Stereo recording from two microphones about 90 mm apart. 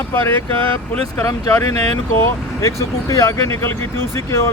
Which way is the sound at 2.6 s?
35° left (ahead or behind).